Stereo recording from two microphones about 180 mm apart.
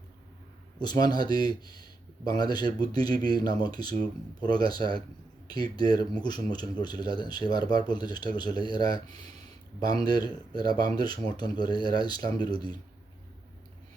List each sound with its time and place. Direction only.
0.8 s speech: 25° left (ahead or behind)